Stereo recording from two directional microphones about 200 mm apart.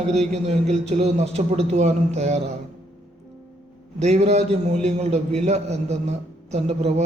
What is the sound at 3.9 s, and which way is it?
A man's voice, 35° right (ahead or behind).